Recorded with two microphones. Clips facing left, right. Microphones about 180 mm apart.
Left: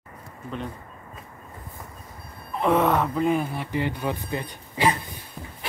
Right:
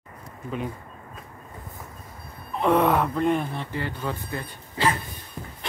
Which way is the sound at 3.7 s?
15° left (ahead or behind).